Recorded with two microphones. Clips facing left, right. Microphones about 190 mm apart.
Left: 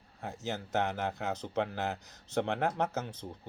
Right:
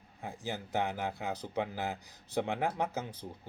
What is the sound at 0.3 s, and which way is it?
Speech, 10° right (ahead or behind).